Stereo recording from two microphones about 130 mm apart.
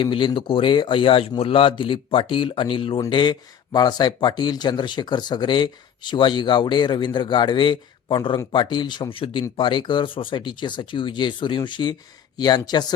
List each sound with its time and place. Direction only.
0.0 s speech: 40° left (ahead or behind)